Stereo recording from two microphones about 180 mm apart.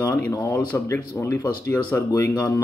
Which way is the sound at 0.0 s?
15° left (ahead or behind).